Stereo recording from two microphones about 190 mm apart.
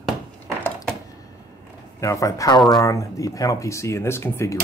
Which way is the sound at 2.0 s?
15° left (ahead or behind).